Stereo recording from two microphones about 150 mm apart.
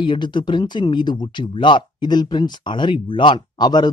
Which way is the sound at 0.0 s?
30° left (ahead or behind).